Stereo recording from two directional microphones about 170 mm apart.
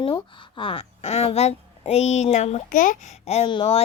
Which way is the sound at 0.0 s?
30° left (ahead or behind).